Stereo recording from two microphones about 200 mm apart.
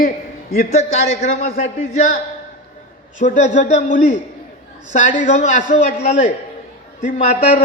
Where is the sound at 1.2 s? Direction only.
35° left (ahead or behind).